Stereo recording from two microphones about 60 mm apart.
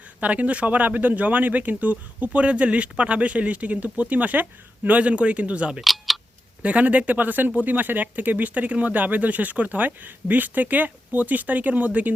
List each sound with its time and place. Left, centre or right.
0.2 s speech: right
5.8 s speech: centre
6.6 s speech: right